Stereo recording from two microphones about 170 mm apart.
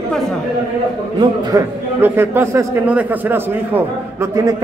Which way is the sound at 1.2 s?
20° right (ahead or behind).